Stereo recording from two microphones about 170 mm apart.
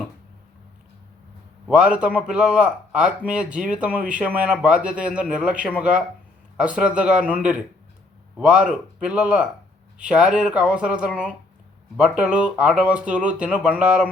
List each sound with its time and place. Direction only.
1.6 s a man's voice: 5° right (ahead or behind)